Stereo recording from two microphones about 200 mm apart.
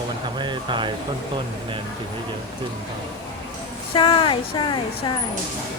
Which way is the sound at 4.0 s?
25° left (ahead or behind).